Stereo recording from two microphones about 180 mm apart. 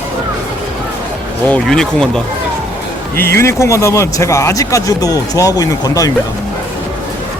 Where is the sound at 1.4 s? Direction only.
5° left (ahead or behind).